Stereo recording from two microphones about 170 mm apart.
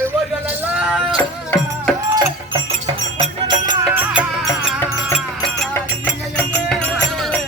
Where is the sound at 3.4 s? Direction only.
25° right (ahead or behind).